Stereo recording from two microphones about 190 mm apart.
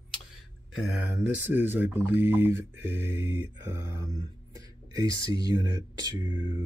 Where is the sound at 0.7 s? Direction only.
5° right (ahead or behind).